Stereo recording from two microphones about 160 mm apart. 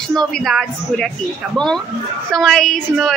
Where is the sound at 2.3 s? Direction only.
5° left (ahead or behind).